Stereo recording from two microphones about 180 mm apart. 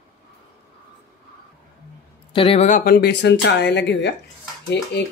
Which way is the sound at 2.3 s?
30° left (ahead or behind).